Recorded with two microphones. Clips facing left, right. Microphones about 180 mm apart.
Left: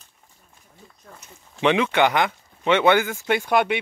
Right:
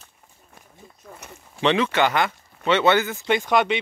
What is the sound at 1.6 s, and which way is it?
Speech, 10° left (ahead or behind).